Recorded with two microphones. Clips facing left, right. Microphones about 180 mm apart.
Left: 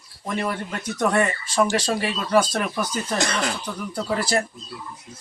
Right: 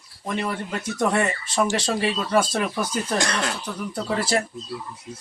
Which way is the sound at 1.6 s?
25° right (ahead or behind).